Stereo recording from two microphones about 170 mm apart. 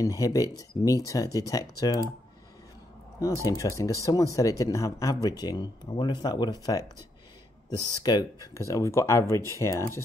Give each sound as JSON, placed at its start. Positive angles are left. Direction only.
{"t": 0.0, "sound": "speech", "side_deg": 20}
{"t": 3.2, "sound": "speech", "side_deg": 20}
{"t": 8.0, "sound": "speech", "side_deg": 25}